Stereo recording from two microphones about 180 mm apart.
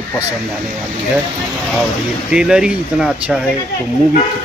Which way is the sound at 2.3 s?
5° right (ahead or behind).